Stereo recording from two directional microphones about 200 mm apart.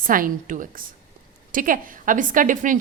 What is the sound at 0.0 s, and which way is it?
A woman's voice, 45° right (ahead or behind).